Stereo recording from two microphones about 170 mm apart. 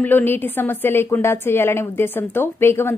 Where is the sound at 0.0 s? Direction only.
10° left (ahead or behind).